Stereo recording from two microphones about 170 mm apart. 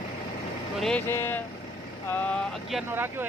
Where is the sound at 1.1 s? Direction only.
10° left (ahead or behind).